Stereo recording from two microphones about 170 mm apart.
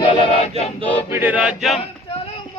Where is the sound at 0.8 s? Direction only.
10° left (ahead or behind).